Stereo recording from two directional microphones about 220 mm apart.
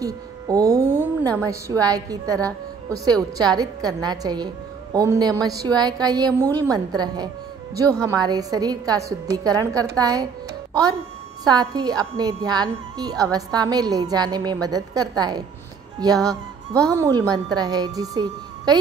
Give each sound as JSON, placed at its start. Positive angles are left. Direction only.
{"t": 0.0, "sound": "a woman's voice", "side_deg": -15}
{"t": 11.4, "sound": "a woman's voice", "side_deg": -15}